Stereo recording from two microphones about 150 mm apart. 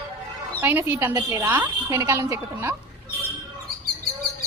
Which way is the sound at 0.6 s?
15° right (ahead or behind).